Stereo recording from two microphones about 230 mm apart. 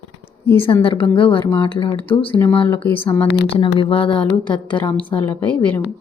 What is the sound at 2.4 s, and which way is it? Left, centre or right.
Speech, centre.